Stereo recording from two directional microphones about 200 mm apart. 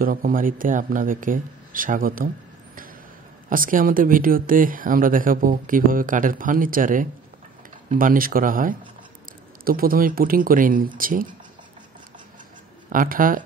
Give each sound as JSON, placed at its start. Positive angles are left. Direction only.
{"t": 0.0, "sound": "speech", "side_deg": -45}
{"t": 3.4, "sound": "speech", "side_deg": -45}
{"t": 12.9, "sound": "speech", "side_deg": -45}